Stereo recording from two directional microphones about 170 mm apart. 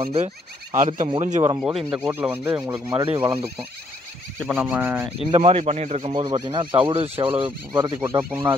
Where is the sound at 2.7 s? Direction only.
25° right (ahead or behind).